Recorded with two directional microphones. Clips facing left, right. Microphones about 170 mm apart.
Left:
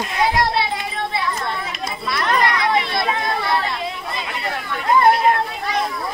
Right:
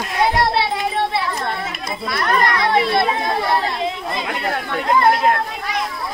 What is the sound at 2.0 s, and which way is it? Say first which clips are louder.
Speech: right 1 dB; 40° right (ahead or behind).